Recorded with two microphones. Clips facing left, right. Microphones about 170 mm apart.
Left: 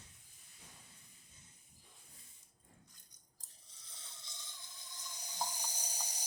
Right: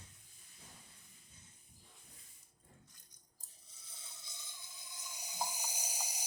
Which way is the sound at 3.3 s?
10° right (ahead or behind).